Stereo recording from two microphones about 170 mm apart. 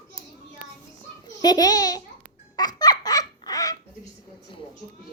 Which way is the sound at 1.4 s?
25° left (ahead or behind).